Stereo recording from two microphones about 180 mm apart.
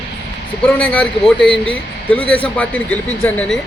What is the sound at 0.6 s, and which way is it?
A man's voice, 5° left (ahead or behind).